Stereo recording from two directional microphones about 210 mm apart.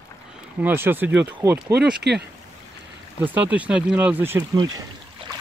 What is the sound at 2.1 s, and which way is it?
Speech, 55° right (ahead or behind).